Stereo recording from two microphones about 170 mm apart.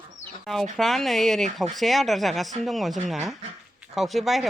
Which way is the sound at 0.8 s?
Centre (ahead or behind).